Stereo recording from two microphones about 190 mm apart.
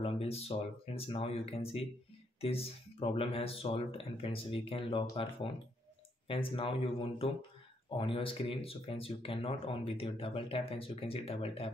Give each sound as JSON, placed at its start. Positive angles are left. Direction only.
{"t": 0.0, "sound": "speech", "side_deg": 30}
{"t": 6.2, "sound": "speech", "side_deg": 25}